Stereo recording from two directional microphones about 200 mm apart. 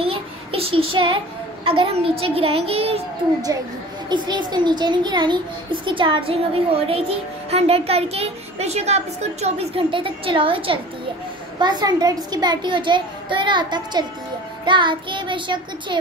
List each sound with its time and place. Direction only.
0.0 s a child's voice: 25° right (ahead or behind)
4.1 s a woman's voice: 20° right (ahead or behind)